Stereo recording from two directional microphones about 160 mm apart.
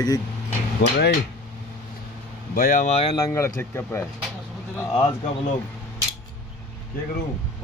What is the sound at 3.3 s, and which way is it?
Speech, 15° left (ahead or behind).